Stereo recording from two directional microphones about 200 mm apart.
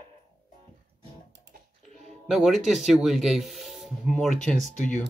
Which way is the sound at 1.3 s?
55° right (ahead or behind).